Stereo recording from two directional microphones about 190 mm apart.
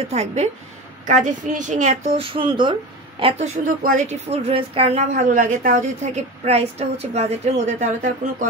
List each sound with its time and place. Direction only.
0.0 s a woman's voice: 35° right (ahead or behind)
3.6 s a woman's voice: 45° right (ahead or behind)